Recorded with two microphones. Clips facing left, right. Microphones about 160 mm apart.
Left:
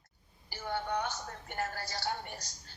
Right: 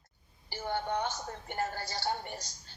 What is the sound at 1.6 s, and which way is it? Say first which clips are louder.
Speech: right 2 dB; 25° right (ahead or behind).